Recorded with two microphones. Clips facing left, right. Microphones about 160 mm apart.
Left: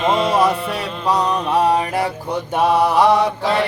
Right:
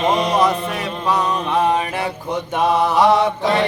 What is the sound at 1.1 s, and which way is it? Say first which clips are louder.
Music: left 2 dB; 10° left (ahead or behind).